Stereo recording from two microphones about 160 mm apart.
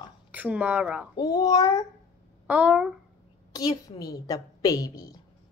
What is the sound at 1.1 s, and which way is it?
Speech, 25° left (ahead or behind).